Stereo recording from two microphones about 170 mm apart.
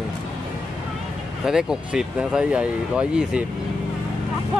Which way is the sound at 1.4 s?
5° right (ahead or behind).